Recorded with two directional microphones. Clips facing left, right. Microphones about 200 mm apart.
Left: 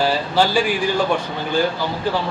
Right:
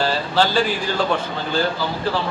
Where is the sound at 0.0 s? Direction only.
10° left (ahead or behind).